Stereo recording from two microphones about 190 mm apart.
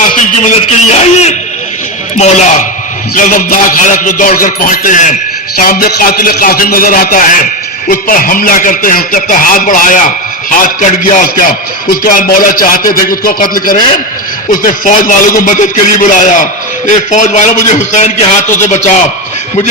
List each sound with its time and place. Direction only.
0.2 s speech: 40° left (ahead or behind)